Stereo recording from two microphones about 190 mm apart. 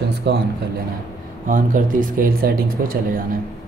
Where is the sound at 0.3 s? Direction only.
60° right (ahead or behind).